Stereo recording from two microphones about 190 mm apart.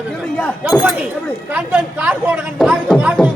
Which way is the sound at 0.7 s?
Centre (ahead or behind).